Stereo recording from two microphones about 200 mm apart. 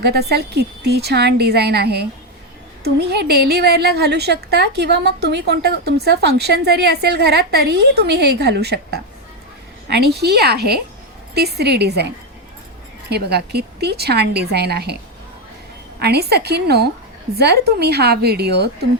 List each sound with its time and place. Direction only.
0.0 s a woman's voice: 55° right (ahead or behind)
16.0 s speech: 55° right (ahead or behind)